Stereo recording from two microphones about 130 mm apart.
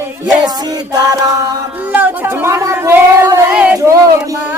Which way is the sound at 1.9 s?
15° right (ahead or behind).